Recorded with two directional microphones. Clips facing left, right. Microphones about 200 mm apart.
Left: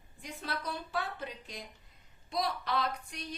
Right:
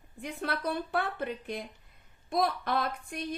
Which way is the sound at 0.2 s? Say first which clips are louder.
Right 6 dB; 55° right (ahead or behind).